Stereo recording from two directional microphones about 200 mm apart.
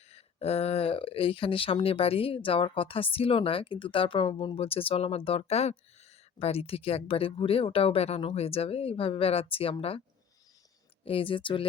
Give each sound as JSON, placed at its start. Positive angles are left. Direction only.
{"t": 0.1, "sound": "speech", "side_deg": 30}
{"t": 11.0, "sound": "speech", "side_deg": 25}